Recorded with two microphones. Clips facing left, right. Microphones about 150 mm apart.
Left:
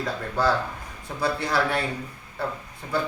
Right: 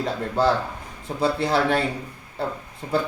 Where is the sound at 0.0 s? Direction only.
25° right (ahead or behind).